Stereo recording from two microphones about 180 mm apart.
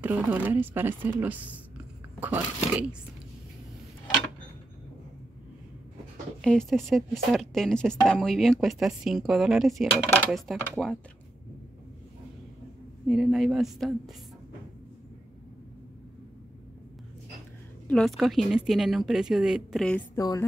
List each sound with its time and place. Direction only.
0.0 s speech: 10° right (ahead or behind)
6.4 s a woman's voice: 5° left (ahead or behind)
13.0 s a woman's voice: 5° right (ahead or behind)
17.8 s a woman's voice: 5° left (ahead or behind)
20.2 s a woman's voice: 20° left (ahead or behind)